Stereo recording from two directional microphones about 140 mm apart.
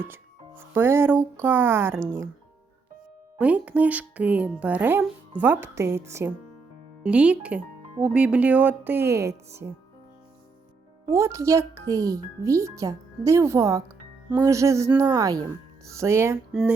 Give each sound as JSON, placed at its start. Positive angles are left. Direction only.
{"t": 0.0, "sound": "a child's voice", "side_deg": -15}
{"t": 3.3, "sound": "speech", "side_deg": -10}
{"t": 7.0, "sound": "speech", "side_deg": -10}
{"t": 11.1, "sound": "a child's voice", "side_deg": -20}
{"t": 16.5, "sound": "speech", "side_deg": -5}